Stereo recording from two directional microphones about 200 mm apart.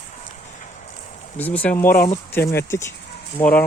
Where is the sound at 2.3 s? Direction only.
10° left (ahead or behind).